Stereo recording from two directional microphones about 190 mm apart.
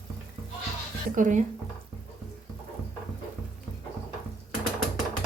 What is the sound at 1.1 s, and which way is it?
Speech, 40° right (ahead or behind).